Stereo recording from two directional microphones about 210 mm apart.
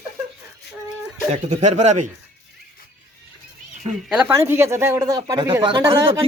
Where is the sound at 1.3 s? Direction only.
35° right (ahead or behind).